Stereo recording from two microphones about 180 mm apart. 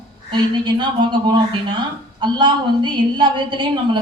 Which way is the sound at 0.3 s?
25° right (ahead or behind).